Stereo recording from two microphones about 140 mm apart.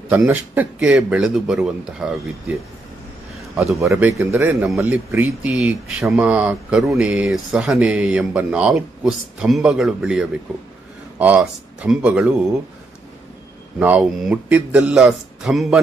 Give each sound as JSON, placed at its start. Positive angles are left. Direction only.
{"t": 0.1, "sound": "speech", "side_deg": -10}
{"t": 3.8, "sound": "a man's voice", "side_deg": -20}
{"t": 13.7, "sound": "speech", "side_deg": -10}